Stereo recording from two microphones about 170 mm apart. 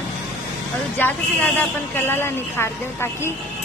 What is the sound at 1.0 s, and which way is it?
A woman's voice, 10° left (ahead or behind).